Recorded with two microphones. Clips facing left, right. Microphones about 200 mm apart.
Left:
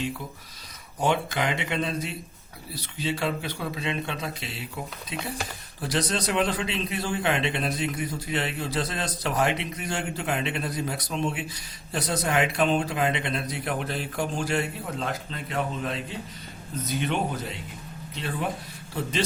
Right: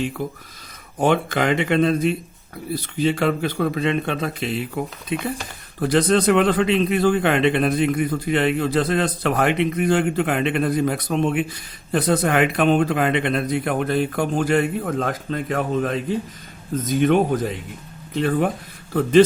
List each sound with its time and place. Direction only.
1.0 s a man's voice: 55° right (ahead or behind)